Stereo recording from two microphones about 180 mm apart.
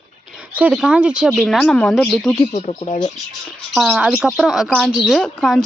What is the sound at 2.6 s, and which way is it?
Speech, 40° left (ahead or behind).